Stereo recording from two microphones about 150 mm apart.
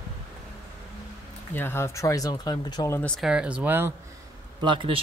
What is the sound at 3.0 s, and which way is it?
Speech, 5° right (ahead or behind).